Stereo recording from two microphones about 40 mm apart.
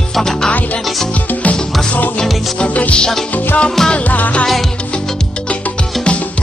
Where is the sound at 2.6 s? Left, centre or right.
Left.